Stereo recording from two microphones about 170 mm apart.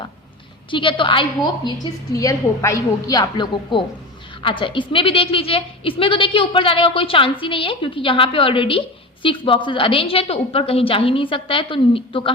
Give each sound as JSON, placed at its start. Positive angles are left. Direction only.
{"t": 0.7, "sound": "a woman's voice", "side_deg": 30}